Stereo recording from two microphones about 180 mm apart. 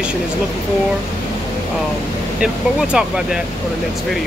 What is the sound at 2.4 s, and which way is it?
Speech, 5° right (ahead or behind).